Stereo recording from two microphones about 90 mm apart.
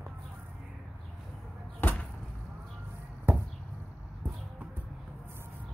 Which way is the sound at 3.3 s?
25° right (ahead or behind).